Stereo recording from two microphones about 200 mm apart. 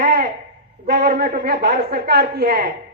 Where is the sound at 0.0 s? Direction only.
45° right (ahead or behind).